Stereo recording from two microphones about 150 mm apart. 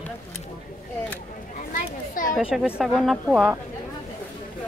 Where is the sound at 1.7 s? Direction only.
65° left (ahead or behind).